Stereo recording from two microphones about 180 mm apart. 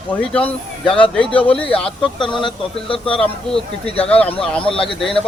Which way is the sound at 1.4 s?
30° left (ahead or behind).